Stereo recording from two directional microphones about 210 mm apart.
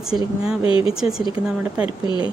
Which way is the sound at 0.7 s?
25° left (ahead or behind).